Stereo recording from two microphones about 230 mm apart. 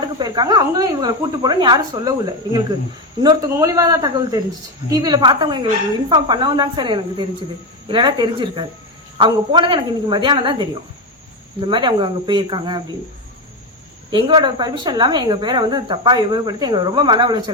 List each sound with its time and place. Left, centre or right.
0.2 s speech: centre
14.1 s speech: centre